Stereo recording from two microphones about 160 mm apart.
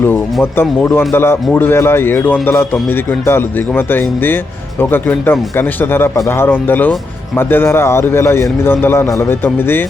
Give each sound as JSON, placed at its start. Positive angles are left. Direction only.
{"t": 0.5, "sound": "a man's voice", "side_deg": 15}